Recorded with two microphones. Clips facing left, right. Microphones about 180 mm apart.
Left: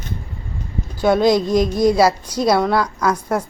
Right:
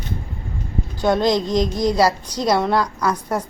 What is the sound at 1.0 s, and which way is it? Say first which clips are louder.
A woman's voice: left 3 dB; 5° left (ahead or behind).